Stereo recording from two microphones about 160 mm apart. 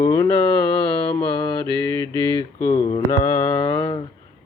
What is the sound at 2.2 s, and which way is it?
Mantra, 15° left (ahead or behind).